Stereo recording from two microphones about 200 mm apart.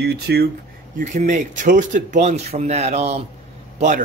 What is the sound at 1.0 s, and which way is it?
A man's voice, 40° right (ahead or behind).